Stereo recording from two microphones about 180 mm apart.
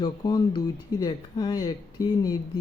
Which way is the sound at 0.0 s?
20° left (ahead or behind).